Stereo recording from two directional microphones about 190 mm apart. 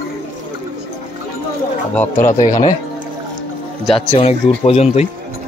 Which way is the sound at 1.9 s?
10° left (ahead or behind).